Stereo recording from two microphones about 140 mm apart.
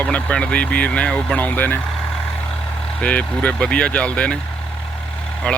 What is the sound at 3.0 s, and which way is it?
Speech, 10° left (ahead or behind).